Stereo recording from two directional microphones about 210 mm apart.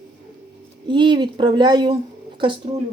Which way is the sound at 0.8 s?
20° right (ahead or behind).